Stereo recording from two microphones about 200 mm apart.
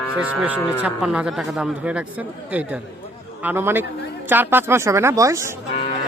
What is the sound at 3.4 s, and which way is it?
Speech, 10° right (ahead or behind).